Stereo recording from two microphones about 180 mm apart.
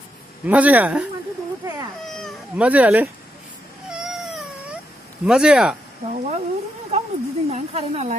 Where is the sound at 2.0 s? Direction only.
5° left (ahead or behind).